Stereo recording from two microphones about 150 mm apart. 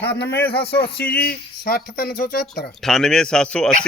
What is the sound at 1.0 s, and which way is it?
Speech, 90° left.